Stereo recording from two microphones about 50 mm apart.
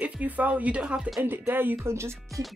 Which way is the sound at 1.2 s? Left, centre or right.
Right.